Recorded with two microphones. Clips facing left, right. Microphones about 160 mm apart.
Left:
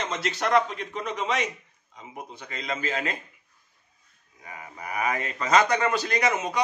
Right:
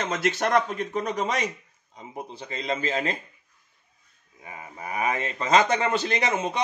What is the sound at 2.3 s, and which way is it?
Speech, 30° right (ahead or behind).